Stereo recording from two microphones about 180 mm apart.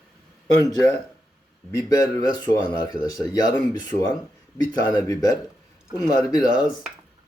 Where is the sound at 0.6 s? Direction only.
20° left (ahead or behind).